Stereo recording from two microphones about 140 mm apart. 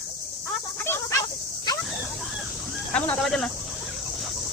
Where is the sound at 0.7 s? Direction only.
15° left (ahead or behind).